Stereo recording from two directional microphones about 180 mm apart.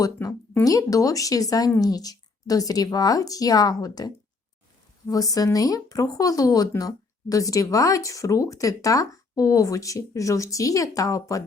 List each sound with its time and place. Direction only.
0.0 s speech: 20° left (ahead or behind)